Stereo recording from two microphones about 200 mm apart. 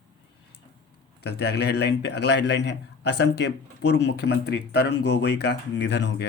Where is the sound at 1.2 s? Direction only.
55° left (ahead or behind).